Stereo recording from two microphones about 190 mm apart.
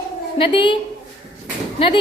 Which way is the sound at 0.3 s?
30° left (ahead or behind).